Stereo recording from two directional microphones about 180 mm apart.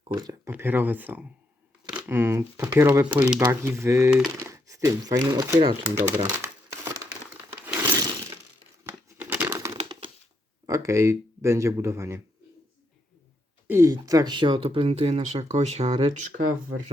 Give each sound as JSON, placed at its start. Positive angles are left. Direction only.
{"t": 0.1, "sound": "speech", "side_deg": -20}
{"t": 0.5, "sound": "speech", "side_deg": -10}
{"t": 5.9, "sound": "crumpling", "side_deg": -10}
{"t": 7.6, "sound": "a sound", "side_deg": -10}
{"t": 8.8, "sound": "tearing", "side_deg": -15}
{"t": 9.5, "sound": "a sound", "side_deg": -20}
{"t": 10.7, "sound": "speech", "side_deg": -15}
{"t": 13.7, "sound": "speech", "side_deg": -15}